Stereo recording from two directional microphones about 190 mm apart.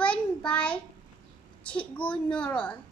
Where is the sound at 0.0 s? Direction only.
5° left (ahead or behind).